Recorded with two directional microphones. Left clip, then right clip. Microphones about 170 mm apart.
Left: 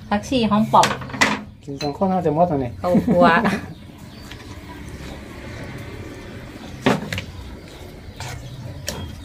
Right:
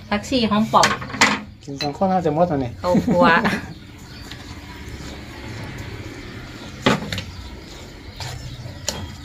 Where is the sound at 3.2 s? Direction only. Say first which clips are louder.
Even; 45° left (ahead or behind).